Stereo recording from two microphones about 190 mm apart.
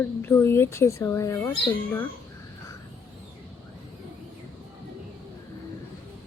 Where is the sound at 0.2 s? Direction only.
10° left (ahead or behind).